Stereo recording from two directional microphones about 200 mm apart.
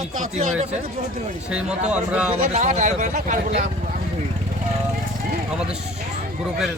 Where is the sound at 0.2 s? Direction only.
35° right (ahead or behind).